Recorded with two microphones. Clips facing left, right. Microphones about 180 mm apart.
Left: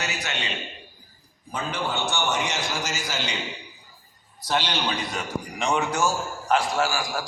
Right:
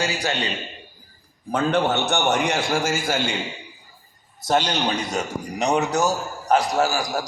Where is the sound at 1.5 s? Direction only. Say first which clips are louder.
Right 8 dB; 65° right (ahead or behind).